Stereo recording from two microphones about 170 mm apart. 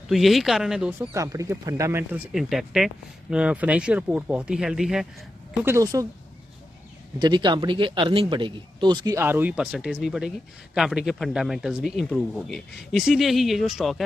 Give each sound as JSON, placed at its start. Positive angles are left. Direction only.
{"t": 0.1, "sound": "speech", "side_deg": 0}
{"t": 1.1, "sound": "speech", "side_deg": -20}
{"t": 2.3, "sound": "speech", "side_deg": 0}
{"t": 5.6, "sound": "speech", "side_deg": -15}
{"t": 7.2, "sound": "speech", "side_deg": -25}
{"t": 9.2, "sound": "speech", "side_deg": -10}